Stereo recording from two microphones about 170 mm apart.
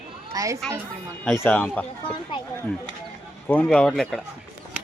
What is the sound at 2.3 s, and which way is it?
Speech, 30° left (ahead or behind).